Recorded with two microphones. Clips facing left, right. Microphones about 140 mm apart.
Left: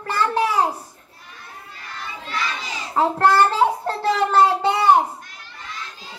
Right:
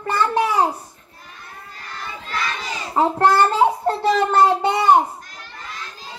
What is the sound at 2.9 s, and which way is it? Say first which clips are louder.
A child's voice: right 1 dB; 15° right (ahead or behind).